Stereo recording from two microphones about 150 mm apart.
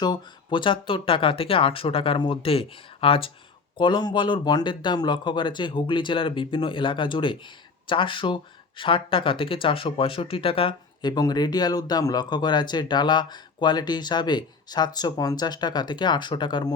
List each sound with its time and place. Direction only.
0.0 s speech: 30° left (ahead or behind)